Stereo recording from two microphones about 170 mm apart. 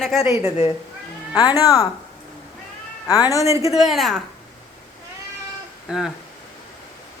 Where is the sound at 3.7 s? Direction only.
Centre (ahead or behind).